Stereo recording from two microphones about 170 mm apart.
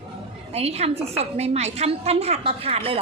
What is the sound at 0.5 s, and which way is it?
A woman's voice, 40° right (ahead or behind).